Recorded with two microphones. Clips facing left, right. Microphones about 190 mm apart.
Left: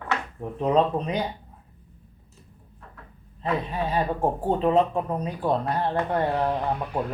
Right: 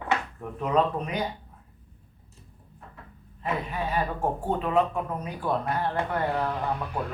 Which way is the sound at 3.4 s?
30° left (ahead or behind).